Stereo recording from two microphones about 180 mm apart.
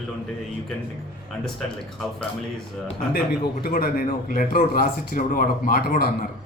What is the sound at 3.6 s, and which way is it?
Speech, 55° left (ahead or behind).